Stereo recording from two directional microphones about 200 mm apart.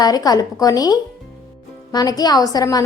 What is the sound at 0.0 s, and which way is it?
A woman's voice, 20° left (ahead or behind).